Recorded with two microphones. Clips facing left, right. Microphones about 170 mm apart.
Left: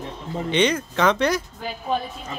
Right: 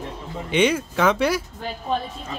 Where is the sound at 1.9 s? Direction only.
5° left (ahead or behind).